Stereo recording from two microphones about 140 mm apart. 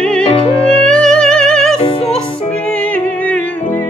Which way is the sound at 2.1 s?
10° left (ahead or behind).